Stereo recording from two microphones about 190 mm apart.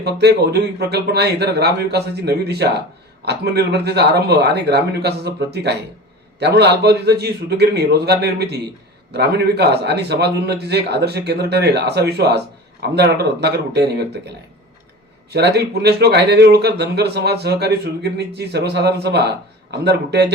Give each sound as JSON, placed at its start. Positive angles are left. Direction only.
{"t": 0.0, "sound": "speech", "side_deg": -60}